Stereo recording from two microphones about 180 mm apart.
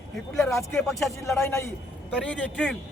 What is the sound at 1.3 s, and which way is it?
A man's voice, 15° left (ahead or behind).